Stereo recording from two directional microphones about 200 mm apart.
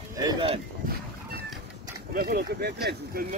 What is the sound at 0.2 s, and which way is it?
Speech, 20° right (ahead or behind).